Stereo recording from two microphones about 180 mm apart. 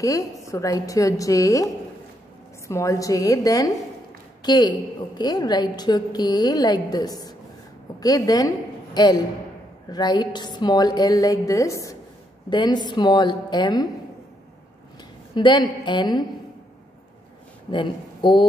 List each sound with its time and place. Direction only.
0.0 s a woman's voice: 20° left (ahead or behind)
2.7 s a woman's voice: 15° left (ahead or behind)
15.3 s a woman's voice: 25° left (ahead or behind)
17.6 s speech: 25° left (ahead or behind)